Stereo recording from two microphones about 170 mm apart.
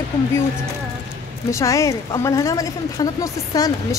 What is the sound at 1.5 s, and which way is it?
A woman's voice, 15° left (ahead or behind).